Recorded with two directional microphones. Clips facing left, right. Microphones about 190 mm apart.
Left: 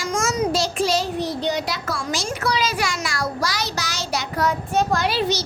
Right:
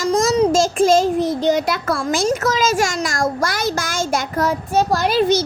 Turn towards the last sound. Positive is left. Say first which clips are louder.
# right 6 dB
turn(degrees=-50)  # may be behind; listen again after turning